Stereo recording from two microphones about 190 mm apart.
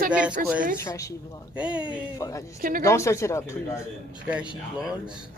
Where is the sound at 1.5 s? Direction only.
5° right (ahead or behind).